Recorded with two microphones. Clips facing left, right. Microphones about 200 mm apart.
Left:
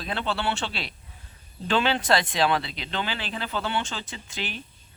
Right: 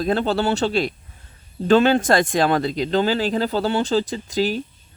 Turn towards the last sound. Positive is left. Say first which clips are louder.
# right 14 dB
turn(degrees=-40)  # may be behind; listen again after turning